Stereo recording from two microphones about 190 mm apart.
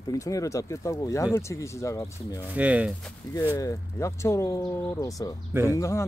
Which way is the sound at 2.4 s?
10° right (ahead or behind).